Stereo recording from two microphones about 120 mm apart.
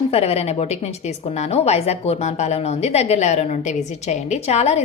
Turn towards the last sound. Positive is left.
turn(degrees=65)  # may be behind; listen again after turning